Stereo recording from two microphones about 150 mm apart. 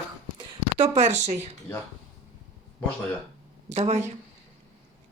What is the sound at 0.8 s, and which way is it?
Speech, 50° right (ahead or behind).